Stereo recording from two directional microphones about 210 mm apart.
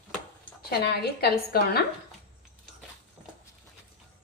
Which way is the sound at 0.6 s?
50° left (ahead or behind).